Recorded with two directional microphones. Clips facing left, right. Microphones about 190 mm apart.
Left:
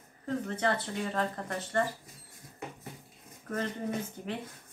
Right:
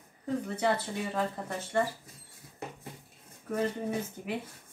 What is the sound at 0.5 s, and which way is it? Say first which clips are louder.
Speech: right 2 dB; 10° right (ahead or behind).